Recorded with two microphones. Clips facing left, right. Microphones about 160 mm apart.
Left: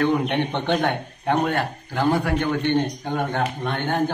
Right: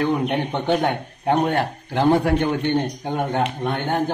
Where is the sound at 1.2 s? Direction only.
20° right (ahead or behind).